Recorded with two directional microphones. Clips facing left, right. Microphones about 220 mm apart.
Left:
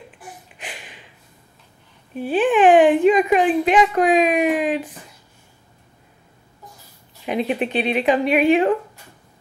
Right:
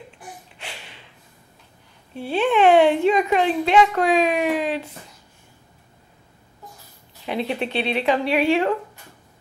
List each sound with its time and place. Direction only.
0.6 s a sound: 15° left (ahead or behind)
2.1 s a woman's voice: 15° left (ahead or behind)
7.2 s a woman's voice: 15° left (ahead or behind)